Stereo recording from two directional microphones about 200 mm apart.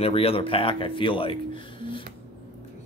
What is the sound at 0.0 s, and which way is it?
Speech, 30° left (ahead or behind).